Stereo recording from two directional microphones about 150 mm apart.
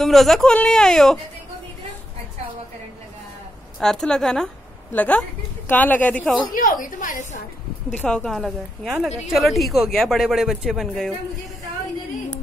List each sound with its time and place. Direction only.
0.0 s speech: centre (ahead or behind)
3.8 s speech: 5° left (ahead or behind)
6.5 s a woman's voice: 65° left (ahead or behind)
7.9 s speech: 10° left (ahead or behind)